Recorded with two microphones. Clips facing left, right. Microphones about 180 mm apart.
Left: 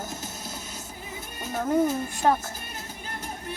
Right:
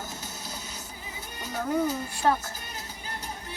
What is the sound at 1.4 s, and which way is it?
Speech, 50° left (ahead or behind).